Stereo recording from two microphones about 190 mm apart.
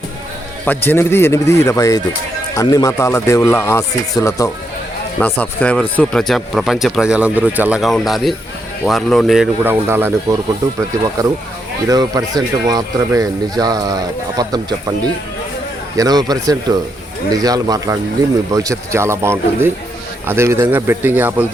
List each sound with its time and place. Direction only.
0.6 s speech: 10° left (ahead or behind); by 10.3 s 15° right (ahead or behind)
11.9 s speech: 20° right (ahead or behind)